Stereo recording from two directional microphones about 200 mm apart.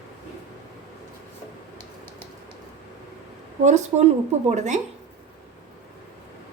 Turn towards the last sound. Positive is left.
turn(degrees=-35)  # may be behind; listen again after turning